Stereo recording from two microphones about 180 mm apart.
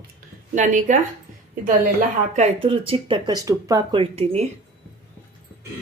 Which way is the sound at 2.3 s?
35° right (ahead or behind).